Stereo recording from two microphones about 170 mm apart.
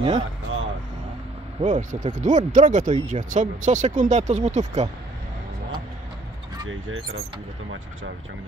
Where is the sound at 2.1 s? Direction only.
50° right (ahead or behind).